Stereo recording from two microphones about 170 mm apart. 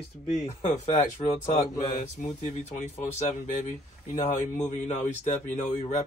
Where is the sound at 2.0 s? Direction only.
45° left (ahead or behind).